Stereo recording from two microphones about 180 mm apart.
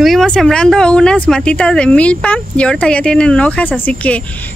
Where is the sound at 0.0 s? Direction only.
Centre (ahead or behind).